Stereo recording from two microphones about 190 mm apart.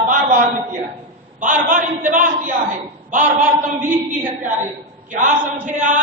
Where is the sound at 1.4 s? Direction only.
45° right (ahead or behind).